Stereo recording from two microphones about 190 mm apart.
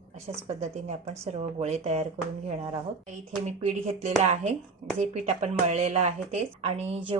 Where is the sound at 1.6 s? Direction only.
35° right (ahead or behind).